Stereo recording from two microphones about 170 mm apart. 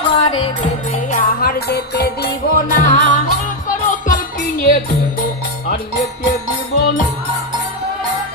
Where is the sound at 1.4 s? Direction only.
65° left (ahead or behind); by 3.2 s 50° left (ahead or behind).